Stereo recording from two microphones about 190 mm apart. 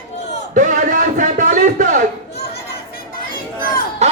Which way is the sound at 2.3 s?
60° left (ahead or behind).